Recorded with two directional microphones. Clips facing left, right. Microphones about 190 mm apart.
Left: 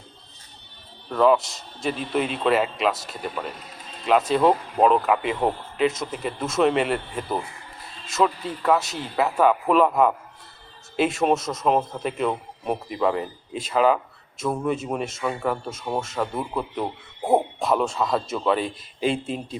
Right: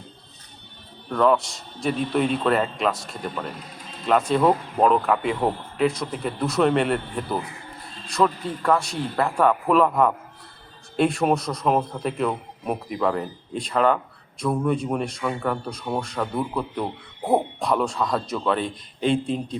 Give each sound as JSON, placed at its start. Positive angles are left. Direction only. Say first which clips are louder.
{"t": 1.1, "sound": "a man's voice", "louder": "left 1 dB", "side_deg": 5}